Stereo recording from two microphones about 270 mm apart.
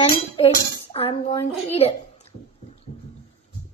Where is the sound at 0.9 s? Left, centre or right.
Left.